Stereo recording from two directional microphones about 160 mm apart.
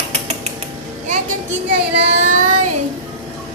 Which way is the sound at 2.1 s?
50° right (ahead or behind).